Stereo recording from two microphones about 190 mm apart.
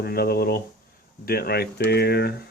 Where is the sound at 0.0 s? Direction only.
55° left (ahead or behind).